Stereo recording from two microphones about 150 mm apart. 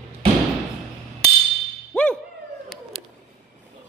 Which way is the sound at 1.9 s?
5° left (ahead or behind).